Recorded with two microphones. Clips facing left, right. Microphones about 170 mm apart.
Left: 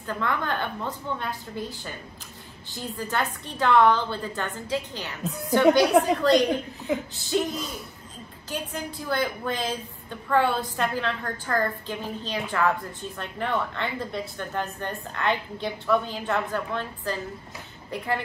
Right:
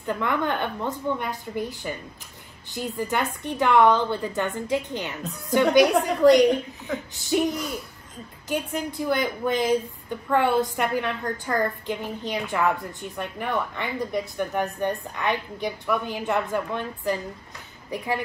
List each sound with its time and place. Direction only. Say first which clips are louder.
0.0 s a woman's voice: right 3 dB; 20° right (ahead or behind)
7.2 s a woman's voice: right 3 dB; 15° right (ahead or behind)